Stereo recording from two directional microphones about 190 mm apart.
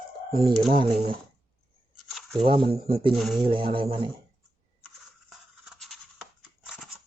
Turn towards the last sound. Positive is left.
turn(degrees=0)  # may be behind; listen again after turning